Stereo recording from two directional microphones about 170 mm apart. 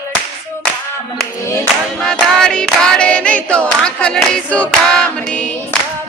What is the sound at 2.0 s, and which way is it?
Choir, 5° left (ahead or behind).